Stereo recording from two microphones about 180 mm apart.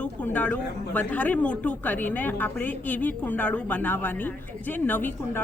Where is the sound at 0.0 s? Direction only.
5° left (ahead or behind).